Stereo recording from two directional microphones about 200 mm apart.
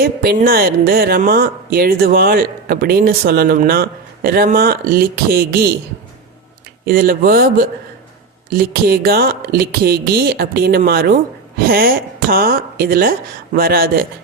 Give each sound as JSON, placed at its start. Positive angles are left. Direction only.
{"t": 0.0, "sound": "speech", "side_deg": -50}
{"t": 6.8, "sound": "speech", "side_deg": -50}